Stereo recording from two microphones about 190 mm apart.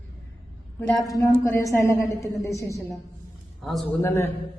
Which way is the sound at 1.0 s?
20° left (ahead or behind).